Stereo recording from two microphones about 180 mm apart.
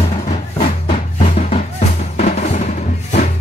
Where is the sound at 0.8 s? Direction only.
45° left (ahead or behind).